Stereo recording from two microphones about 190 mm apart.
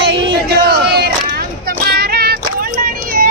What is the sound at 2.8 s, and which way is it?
Vehicle, 50° right (ahead or behind).